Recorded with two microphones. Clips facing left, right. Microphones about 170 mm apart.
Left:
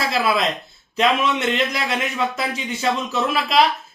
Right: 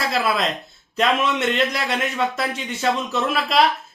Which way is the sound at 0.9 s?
Centre (ahead or behind).